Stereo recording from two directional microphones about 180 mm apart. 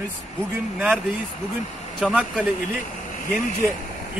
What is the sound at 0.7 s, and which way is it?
Speech, 10° right (ahead or behind).